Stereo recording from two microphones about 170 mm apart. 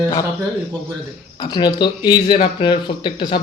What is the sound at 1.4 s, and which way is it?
A man's voice, 25° left (ahead or behind).